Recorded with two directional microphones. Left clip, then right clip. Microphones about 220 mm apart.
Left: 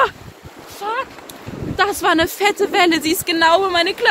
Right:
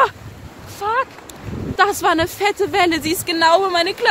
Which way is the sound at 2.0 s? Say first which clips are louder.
Left 1 dB; 10° right (ahead or behind).